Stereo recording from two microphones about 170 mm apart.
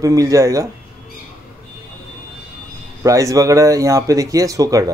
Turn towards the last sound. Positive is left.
turn(degrees=-20)  # may be behind; listen again after turning